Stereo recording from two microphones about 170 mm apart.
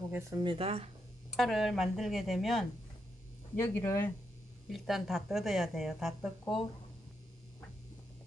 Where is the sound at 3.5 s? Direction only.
15° left (ahead or behind).